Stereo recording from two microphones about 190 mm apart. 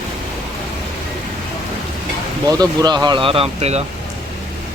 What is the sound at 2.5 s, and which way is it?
Speech, 20° right (ahead or behind).